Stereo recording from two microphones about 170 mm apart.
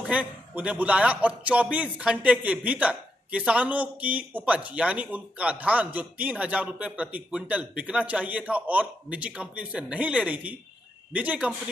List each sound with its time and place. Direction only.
0.0 s a man's voice: 5° right (ahead or behind)